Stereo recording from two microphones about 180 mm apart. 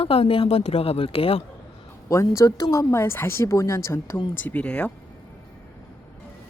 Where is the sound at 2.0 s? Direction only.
15° left (ahead or behind).